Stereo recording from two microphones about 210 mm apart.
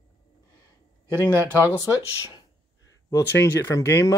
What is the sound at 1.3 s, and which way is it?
Speech, 15° right (ahead or behind).